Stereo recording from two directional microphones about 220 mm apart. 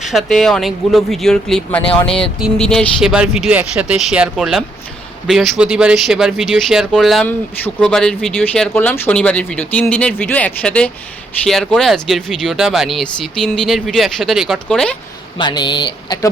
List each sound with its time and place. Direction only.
0.0 s speech: centre (ahead or behind)
15.4 s speech: 20° left (ahead or behind)